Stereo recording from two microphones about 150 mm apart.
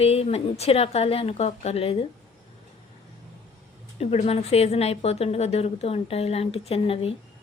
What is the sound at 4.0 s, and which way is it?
Speech, 45° left (ahead or behind).